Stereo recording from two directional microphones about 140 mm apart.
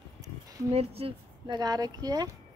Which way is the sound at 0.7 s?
45° right (ahead or behind).